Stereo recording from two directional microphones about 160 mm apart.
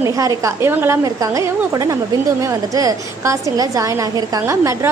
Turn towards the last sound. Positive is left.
turn(degrees=-20)  # may be behind; listen again after turning